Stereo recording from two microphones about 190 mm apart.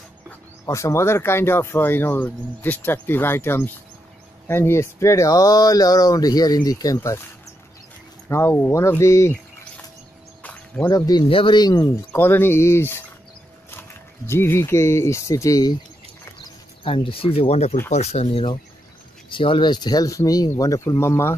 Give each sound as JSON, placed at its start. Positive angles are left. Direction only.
{"t": 0.7, "sound": "speech", "side_deg": 15}
{"t": 8.3, "sound": "speech", "side_deg": 15}
{"t": 10.4, "sound": "a sound", "side_deg": 10}
{"t": 10.9, "sound": "speech", "side_deg": 20}
{"t": 16.3, "sound": "a sound", "side_deg": 25}
{"t": 17.9, "sound": "speech", "side_deg": 35}